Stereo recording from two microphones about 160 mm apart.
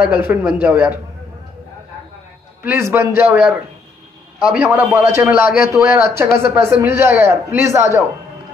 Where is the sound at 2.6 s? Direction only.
15° right (ahead or behind).